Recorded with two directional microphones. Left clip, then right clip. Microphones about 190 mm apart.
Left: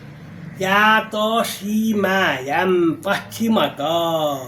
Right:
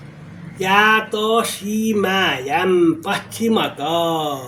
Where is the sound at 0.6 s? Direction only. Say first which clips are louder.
Right 1 dB; 10° left (ahead or behind).